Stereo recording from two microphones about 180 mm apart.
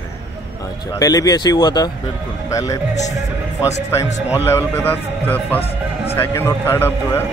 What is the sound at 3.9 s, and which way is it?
Speech, 15° left (ahead or behind).